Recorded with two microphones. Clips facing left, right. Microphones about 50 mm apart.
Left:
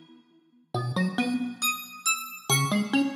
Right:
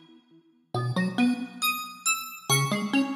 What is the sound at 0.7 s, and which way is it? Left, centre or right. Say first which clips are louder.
Music: even; centre.